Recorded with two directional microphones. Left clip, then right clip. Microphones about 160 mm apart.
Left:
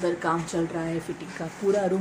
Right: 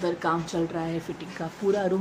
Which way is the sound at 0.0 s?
5° left (ahead or behind).